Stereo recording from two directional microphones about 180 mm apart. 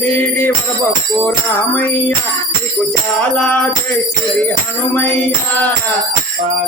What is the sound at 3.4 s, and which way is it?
Music, 10° left (ahead or behind).